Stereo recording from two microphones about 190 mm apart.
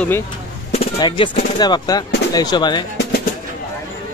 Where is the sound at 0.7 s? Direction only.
25° left (ahead or behind).